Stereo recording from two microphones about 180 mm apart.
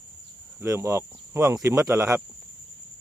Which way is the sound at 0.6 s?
15° right (ahead or behind).